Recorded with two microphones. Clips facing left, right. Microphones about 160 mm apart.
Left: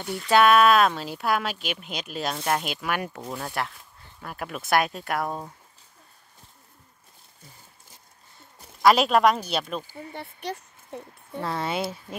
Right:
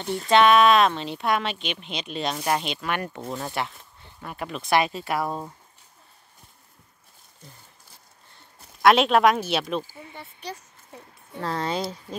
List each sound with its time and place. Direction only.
0.3 s speech: 5° left (ahead or behind)
8.8 s speech: centre (ahead or behind)
10.1 s a sound: 60° left (ahead or behind)
11.4 s speech: 5° left (ahead or behind)